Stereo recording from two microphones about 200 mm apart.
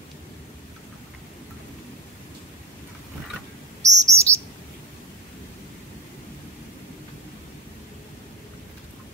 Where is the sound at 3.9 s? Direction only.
15° right (ahead or behind).